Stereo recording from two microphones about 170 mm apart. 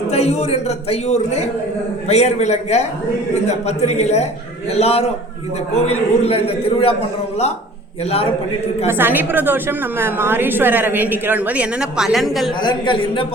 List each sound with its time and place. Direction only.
0.1 s a man's voice: 40° left (ahead or behind)
8.9 s a woman's voice: 10° right (ahead or behind)
12.6 s speech: 25° left (ahead or behind)